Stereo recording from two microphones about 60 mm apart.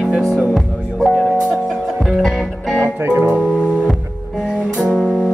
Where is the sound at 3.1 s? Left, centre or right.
Right.